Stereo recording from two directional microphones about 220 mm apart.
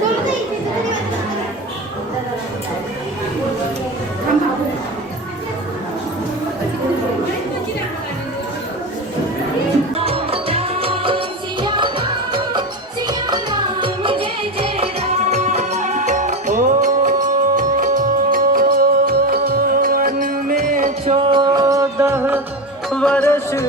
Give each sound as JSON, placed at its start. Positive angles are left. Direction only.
{"t": 9.9, "sound": "music", "side_deg": -25}
{"t": 22.9, "sound": "music", "side_deg": 5}